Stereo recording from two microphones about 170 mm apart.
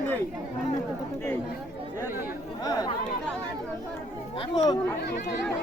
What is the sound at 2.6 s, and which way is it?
Speech, 20° left (ahead or behind).